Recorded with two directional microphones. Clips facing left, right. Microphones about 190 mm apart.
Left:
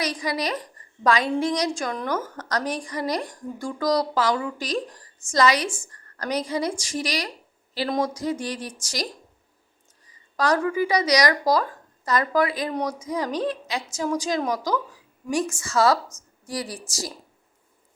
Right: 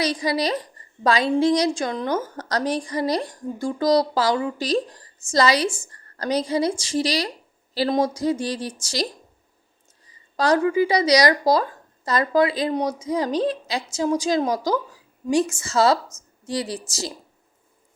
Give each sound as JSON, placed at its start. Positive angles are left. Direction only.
{"t": 0.0, "sound": "a woman's voice", "side_deg": -30}
{"t": 10.1, "sound": "a woman's voice", "side_deg": -25}